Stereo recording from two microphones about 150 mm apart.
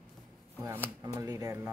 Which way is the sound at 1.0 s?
20° right (ahead or behind).